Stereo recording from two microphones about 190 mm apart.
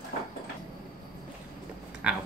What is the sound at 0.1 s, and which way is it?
Sliding door, 50° left (ahead or behind).